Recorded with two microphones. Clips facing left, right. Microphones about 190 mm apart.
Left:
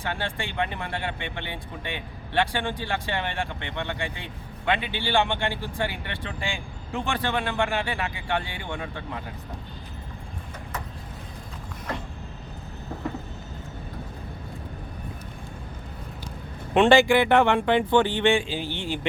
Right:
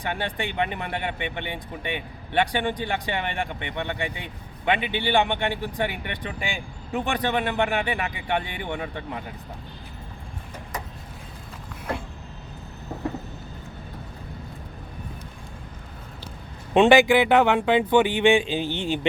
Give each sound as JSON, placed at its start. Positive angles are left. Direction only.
{"t": 0.0, "sound": "speech", "side_deg": -15}
{"t": 16.7, "sound": "speech", "side_deg": -15}